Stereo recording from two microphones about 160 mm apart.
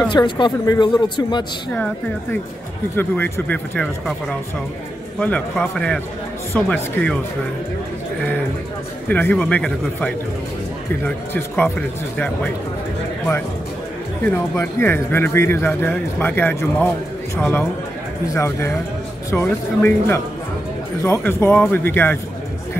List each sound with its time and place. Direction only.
0.1 s speech: 25° left (ahead or behind)
3.0 s speech: 15° left (ahead or behind)
9.1 s speech: 10° left (ahead or behind)
14.2 s speech: 15° left (ahead or behind)